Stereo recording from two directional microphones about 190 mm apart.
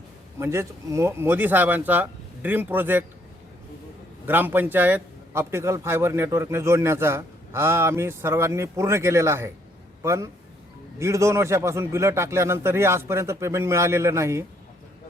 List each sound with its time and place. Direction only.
0.3 s a man's voice: 15° right (ahead or behind)
4.3 s a man's voice: 10° right (ahead or behind)